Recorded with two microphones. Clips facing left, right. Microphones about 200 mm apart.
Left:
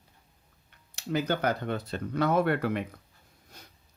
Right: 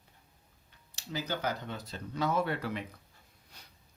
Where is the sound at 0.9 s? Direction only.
60° left (ahead or behind).